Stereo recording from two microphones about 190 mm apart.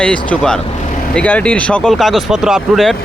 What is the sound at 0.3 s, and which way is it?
Speech, 5° left (ahead or behind).